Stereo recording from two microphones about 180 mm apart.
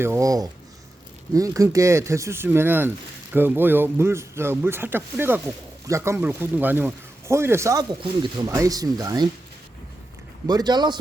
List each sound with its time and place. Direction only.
0.0 s speech: 15° right (ahead or behind)
10.4 s speech: 20° right (ahead or behind)